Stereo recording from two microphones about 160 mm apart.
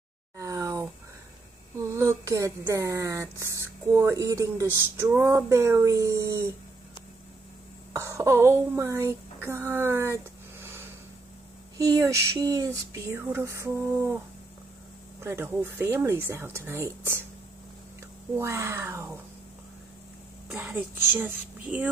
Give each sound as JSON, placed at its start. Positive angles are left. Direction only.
{"t": 0.4, "sound": "a sound", "side_deg": -20}
{"t": 1.8, "sound": "speech", "side_deg": -20}
{"t": 7.9, "sound": "speech", "side_deg": -15}
{"t": 15.1, "sound": "speech", "side_deg": -15}
{"t": 18.3, "sound": "speech", "side_deg": -15}
{"t": 20.5, "sound": "speech", "side_deg": -10}